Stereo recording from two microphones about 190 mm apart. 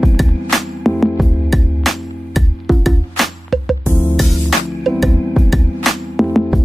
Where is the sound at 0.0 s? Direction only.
Centre (ahead or behind).